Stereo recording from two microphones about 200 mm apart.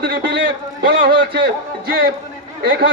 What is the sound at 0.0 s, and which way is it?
Speech, 50° right (ahead or behind).